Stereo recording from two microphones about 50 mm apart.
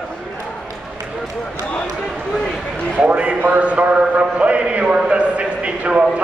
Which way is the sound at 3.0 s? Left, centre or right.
Right.